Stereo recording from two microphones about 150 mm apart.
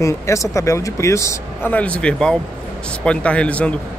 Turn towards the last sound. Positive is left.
turn(degrees=10)  # may be behind; listen again after turning